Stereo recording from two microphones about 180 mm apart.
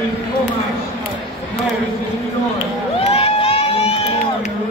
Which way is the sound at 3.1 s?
30° left (ahead or behind).